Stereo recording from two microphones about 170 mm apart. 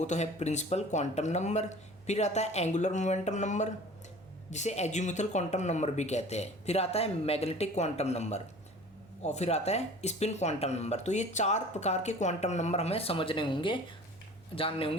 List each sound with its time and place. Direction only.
0.0 s speech: 40° left (ahead or behind)